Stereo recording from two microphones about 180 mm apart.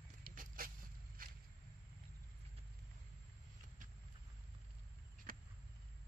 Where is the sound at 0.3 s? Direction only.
50° right (ahead or behind).